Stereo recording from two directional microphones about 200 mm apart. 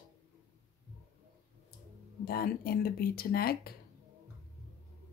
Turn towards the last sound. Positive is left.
turn(degrees=50)  # may be behind; listen again after turning